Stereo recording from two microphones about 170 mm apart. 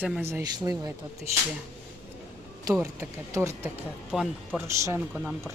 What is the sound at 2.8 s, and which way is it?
Speech, 15° right (ahead or behind).